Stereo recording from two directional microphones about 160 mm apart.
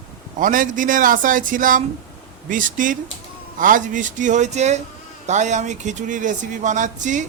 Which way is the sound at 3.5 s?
55° right (ahead or behind).